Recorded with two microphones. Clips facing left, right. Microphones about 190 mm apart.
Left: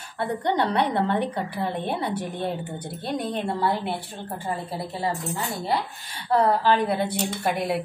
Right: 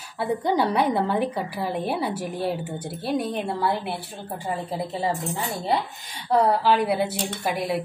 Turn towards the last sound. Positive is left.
turn(degrees=0)  # may be behind; listen again after turning